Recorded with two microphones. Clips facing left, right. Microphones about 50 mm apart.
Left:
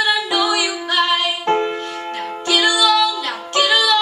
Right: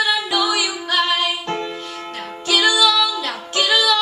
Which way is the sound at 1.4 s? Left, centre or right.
Left.